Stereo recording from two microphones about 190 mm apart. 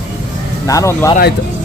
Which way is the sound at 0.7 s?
15° left (ahead or behind).